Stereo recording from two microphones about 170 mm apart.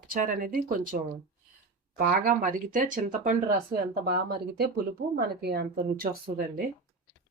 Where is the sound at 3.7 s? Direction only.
65° right (ahead or behind).